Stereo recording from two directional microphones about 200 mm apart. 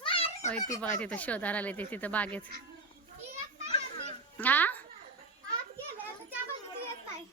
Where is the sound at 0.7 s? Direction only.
5° left (ahead or behind).